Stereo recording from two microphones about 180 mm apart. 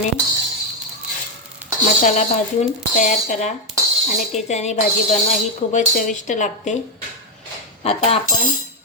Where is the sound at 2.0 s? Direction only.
40° left (ahead or behind).